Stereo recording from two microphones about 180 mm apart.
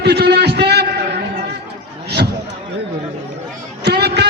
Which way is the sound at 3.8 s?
65° right (ahead or behind).